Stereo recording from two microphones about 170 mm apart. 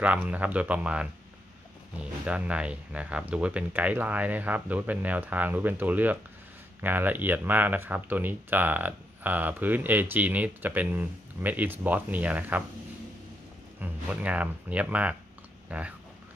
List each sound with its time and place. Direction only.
0.0 s speech: 10° right (ahead or behind)
2.2 s speech: 5° right (ahead or behind)
13.7 s speech: 10° right (ahead or behind)